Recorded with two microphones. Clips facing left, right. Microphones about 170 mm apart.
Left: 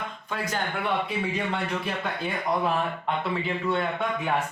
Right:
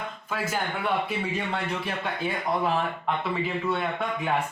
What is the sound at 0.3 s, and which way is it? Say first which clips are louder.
Speech: right 1 dB; 5° right (ahead or behind).